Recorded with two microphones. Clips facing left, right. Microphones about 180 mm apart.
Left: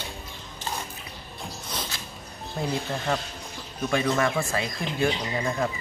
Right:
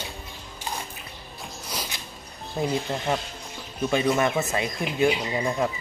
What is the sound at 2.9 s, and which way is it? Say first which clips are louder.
Speech: right 1 dB; 20° right (ahead or behind).